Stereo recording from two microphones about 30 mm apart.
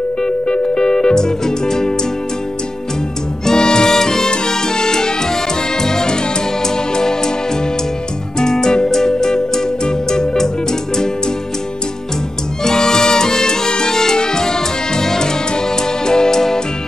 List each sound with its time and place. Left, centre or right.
0.5 s music: left
3.4 s music: left
8.4 s music: left
12.6 s music: left